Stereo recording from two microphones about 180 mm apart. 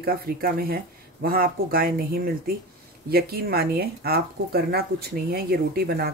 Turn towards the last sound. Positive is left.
turn(degrees=-60)  # may be behind; listen again after turning